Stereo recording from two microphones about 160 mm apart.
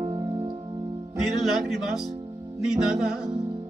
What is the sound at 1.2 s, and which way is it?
Speech, centre (ahead or behind).